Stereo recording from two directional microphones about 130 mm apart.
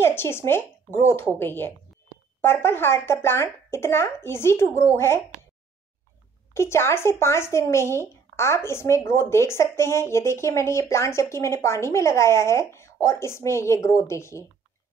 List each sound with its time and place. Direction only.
0.0 s speech: 20° left (ahead or behind)
6.5 s speech: 20° left (ahead or behind)